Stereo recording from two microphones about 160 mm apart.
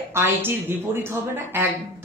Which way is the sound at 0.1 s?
15° right (ahead or behind).